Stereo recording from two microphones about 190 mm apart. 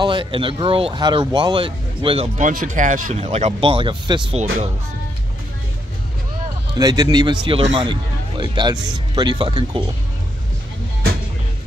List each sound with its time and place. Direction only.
0.0 s speech: 25° right (ahead or behind)
6.7 s speech: 20° right (ahead or behind)